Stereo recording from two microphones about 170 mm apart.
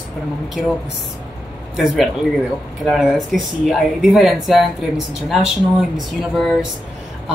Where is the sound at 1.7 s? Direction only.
Centre (ahead or behind).